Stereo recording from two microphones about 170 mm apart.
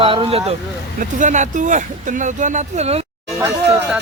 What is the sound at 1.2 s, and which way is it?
Speech, 45° right (ahead or behind).